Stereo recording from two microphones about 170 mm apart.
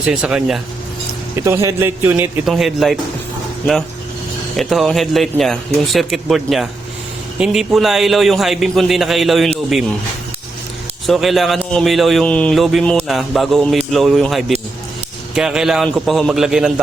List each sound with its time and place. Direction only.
0.0 s speech: 5° right (ahead or behind)
1.5 s a man's voice: 15° right (ahead or behind)
2.5 s speech: centre (ahead or behind)
4.5 s speech: centre (ahead or behind)
11.0 s speech: centre (ahead or behind)